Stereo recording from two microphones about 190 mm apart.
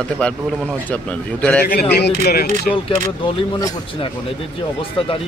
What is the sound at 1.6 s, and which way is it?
Speech, 55° left (ahead or behind).